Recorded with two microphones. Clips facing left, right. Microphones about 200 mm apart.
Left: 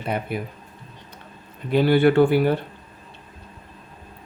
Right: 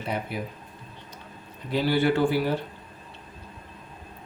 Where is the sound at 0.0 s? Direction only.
55° left (ahead or behind).